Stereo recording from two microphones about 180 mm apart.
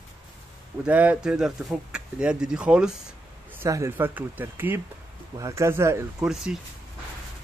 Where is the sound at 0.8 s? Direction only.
10° right (ahead or behind).